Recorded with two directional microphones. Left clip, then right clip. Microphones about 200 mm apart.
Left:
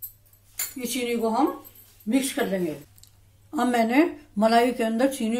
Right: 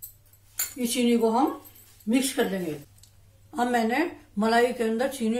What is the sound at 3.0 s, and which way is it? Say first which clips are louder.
Speech: left 2 dB; 35° left (ahead or behind).